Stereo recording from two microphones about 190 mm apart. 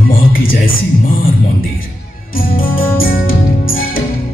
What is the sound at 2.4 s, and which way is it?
Music, 50° left (ahead or behind).